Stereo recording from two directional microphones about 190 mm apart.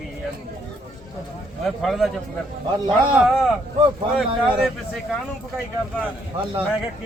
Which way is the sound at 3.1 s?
Centre (ahead or behind).